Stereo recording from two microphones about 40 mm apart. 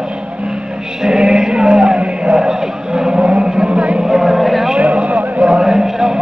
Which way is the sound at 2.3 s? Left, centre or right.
Centre.